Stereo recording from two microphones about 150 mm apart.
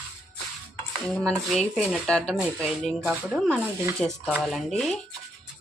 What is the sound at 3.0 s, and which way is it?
Speech, 10° right (ahead or behind).